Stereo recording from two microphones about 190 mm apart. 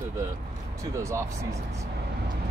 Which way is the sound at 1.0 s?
15° right (ahead or behind).